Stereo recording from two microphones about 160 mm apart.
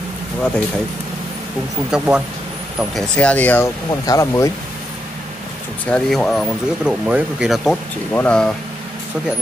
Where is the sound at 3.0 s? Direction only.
5° left (ahead or behind).